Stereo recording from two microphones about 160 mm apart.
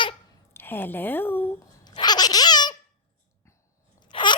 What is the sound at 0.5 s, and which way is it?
Speech, 15° left (ahead or behind).